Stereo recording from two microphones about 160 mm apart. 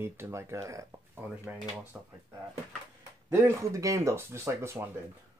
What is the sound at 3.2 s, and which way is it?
Speech, 20° right (ahead or behind).